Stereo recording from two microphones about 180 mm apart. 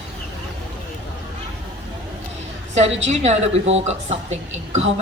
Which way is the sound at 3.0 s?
35° right (ahead or behind).